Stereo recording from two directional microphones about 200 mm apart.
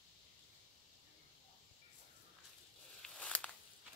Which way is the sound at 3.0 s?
5° left (ahead or behind).